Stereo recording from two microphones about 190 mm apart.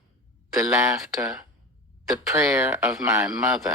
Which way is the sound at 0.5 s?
15° right (ahead or behind).